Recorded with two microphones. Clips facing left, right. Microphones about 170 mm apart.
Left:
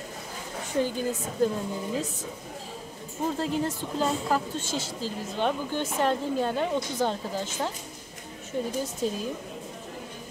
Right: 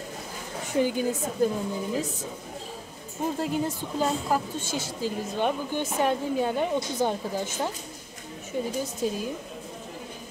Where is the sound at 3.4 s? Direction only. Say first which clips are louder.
Even; 10° right (ahead or behind).